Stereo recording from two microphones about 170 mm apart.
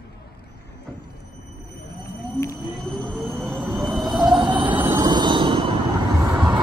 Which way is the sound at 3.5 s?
Centre (ahead or behind).